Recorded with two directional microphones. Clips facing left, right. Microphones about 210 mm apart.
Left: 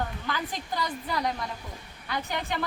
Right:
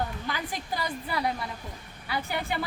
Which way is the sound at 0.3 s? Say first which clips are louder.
Even; 10° right (ahead or behind).